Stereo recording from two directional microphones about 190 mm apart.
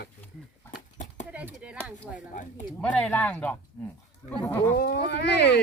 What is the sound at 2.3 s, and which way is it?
Speech, 40° left (ahead or behind).